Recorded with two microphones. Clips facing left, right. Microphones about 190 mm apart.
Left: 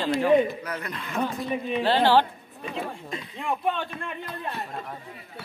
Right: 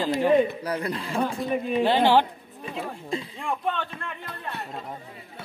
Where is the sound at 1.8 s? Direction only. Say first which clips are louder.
Even; 15° right (ahead or behind).